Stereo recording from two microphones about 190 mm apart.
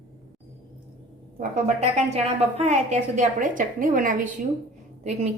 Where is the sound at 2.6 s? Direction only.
35° right (ahead or behind).